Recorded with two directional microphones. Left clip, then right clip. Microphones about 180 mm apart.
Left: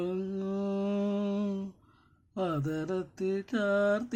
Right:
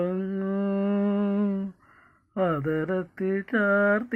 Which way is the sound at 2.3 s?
25° right (ahead or behind).